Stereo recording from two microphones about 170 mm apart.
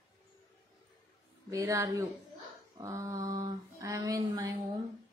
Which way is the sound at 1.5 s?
20° right (ahead or behind).